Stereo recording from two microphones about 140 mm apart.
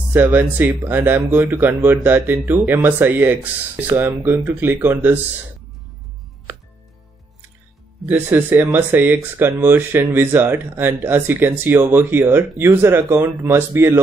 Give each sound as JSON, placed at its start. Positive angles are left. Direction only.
{"t": 0.1, "sound": "speech", "side_deg": -15}
{"t": 8.1, "sound": "speech", "side_deg": -15}